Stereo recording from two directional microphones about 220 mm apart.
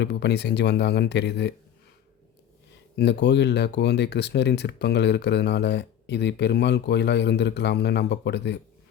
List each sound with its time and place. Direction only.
0.0 s speech: 50° left (ahead or behind)
2.9 s speech: 50° left (ahead or behind)